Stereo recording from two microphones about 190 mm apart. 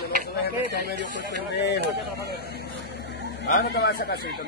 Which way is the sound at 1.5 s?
65° left (ahead or behind).